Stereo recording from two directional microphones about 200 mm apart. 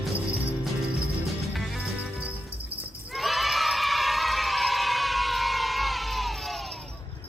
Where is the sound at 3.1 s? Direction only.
Centre (ahead or behind).